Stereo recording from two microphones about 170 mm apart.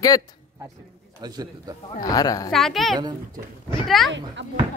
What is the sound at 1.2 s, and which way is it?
Speech, 25° right (ahead or behind).